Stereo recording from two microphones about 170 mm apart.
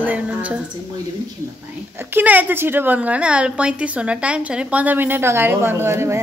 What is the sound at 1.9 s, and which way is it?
A woman's voice, 15° right (ahead or behind).